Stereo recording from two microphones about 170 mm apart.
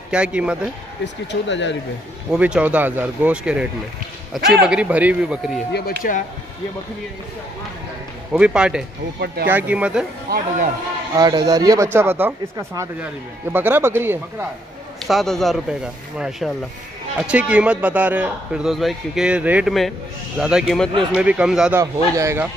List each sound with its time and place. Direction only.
0.1 s speech: 5° right (ahead or behind)
1.0 s speech: 90° left
2.3 s speech: 5° right (ahead or behind)
5.7 s speech: 65° left (ahead or behind)
8.3 s speech: 5° right (ahead or behind)
10.3 s speech: 65° right (ahead or behind)
11.1 s speech: 20° right (ahead or behind)
15.0 s speech: centre (ahead or behind)
21.7 s speech: 15° right (ahead or behind)